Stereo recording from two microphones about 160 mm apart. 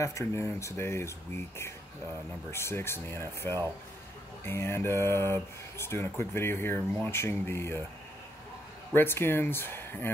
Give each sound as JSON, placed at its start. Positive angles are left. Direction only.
{"t": 0.0, "sound": "speech", "side_deg": 15}
{"t": 8.9, "sound": "speech", "side_deg": 15}